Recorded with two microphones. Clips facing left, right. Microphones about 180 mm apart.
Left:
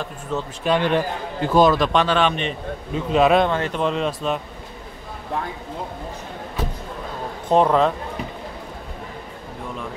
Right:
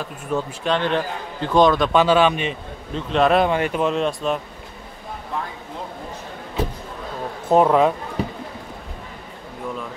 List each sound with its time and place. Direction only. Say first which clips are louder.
0.3 s speech: right 3 dB; 10° right (ahead or behind)
0.7 s a man's voice: left 3 dB; 10° left (ahead or behind)
3.4 s speech: right 2 dB; 10° right (ahead or behind)
3.8 s a man's voice: right 1 dB; centre (ahead or behind)
7.4 s speech: right 1 dB; 5° right (ahead or behind)
8.2 s a sound: right 5 dB; 35° right (ahead or behind)